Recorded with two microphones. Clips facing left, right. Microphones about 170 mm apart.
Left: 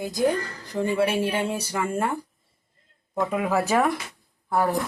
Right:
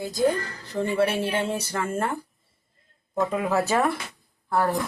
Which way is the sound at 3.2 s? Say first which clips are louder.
Even; 10° left (ahead or behind).